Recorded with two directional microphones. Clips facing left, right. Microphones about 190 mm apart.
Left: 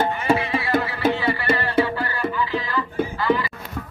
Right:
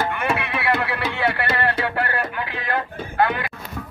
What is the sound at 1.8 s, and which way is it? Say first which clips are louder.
Music: right 2 dB; 65° right (ahead or behind).